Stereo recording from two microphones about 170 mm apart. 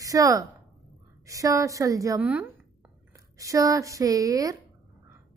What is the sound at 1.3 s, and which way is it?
A woman's voice, 20° right (ahead or behind).